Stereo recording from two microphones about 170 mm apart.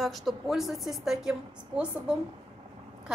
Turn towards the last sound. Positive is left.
turn(degrees=-5)  # may be behind; listen again after turning